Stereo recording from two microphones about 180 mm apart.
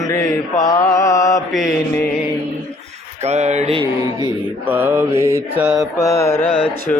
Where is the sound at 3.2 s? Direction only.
40° right (ahead or behind).